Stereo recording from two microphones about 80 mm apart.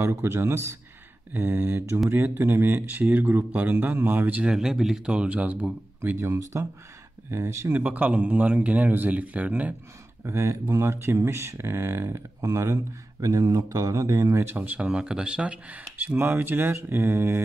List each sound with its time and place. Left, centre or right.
0.0 s speech: right
4.4 s speech: centre
6.1 s speech: right
7.8 s speech: centre
10.2 s speech: right
14.5 s speech: right
14.9 s speech: centre; by 17.4 s right